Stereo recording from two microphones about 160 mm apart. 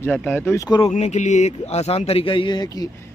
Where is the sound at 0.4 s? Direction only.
15° left (ahead or behind).